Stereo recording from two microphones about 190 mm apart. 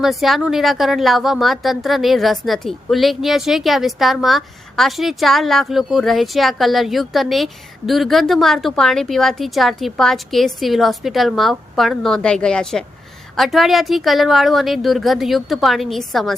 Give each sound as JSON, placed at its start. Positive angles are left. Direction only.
{"t": 0.0, "sound": "a woman's voice", "side_deg": 0}